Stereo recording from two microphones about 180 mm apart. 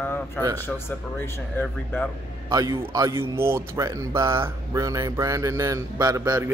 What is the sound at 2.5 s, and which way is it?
Speech, 20° right (ahead or behind).